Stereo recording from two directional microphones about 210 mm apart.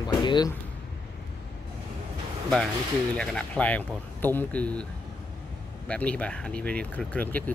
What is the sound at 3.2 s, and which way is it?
Speech, 5° left (ahead or behind).